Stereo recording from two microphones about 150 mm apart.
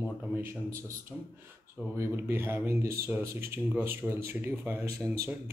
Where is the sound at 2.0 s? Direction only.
15° right (ahead or behind).